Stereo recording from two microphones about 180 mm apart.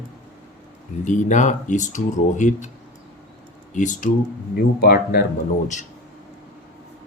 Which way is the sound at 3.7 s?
45° left (ahead or behind).